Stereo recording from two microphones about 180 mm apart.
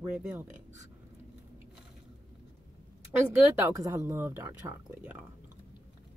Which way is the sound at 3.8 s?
15° right (ahead or behind).